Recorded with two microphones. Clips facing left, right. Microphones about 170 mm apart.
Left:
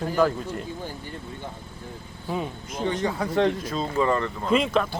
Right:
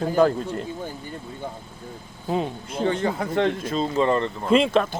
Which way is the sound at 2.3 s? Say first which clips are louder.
Right 4 dB; 30° right (ahead or behind).